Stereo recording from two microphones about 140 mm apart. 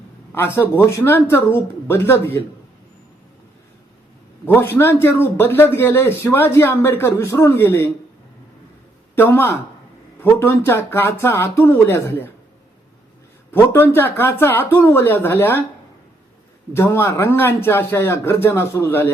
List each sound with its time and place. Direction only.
0.3 s a man's voice: 15° left (ahead or behind)
4.4 s a man's voice: 15° left (ahead or behind)
9.1 s a man's voice: 15° left (ahead or behind)
13.5 s a man's voice: 15° left (ahead or behind)
16.7 s a man's voice: 15° left (ahead or behind)